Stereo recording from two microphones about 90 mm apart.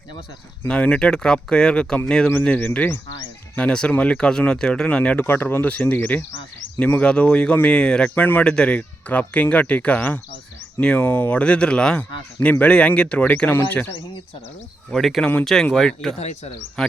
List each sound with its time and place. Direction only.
0.7 s speech: 10° left (ahead or behind)
14.8 s speech: centre (ahead or behind)